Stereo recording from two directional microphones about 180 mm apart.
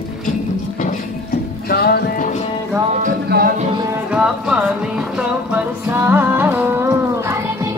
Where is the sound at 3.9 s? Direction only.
5° right (ahead or behind).